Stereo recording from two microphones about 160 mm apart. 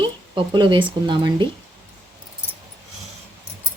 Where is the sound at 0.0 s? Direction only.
30° right (ahead or behind).